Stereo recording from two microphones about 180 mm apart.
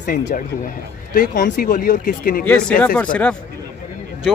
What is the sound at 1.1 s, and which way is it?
Speech, 50° left (ahead or behind).